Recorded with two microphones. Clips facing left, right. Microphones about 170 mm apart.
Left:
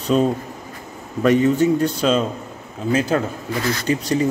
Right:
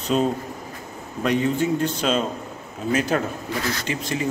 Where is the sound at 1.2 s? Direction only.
45° left (ahead or behind).